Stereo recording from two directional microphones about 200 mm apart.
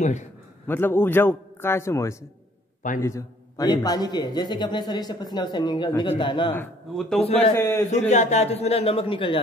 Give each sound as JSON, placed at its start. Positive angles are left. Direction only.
{"t": 0.7, "sound": "a man's voice", "side_deg": 10}
{"t": 6.5, "sound": "a man's voice", "side_deg": 5}
{"t": 7.2, "sound": "a man's voice", "side_deg": 30}
{"t": 7.5, "sound": "a man's voice", "side_deg": 15}
{"t": 7.9, "sound": "a man's voice", "side_deg": 35}